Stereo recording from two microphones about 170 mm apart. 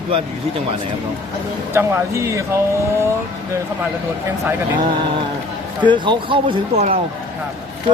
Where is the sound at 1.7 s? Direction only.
15° right (ahead or behind).